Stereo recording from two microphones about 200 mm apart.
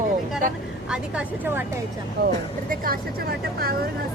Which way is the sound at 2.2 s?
50° right (ahead or behind).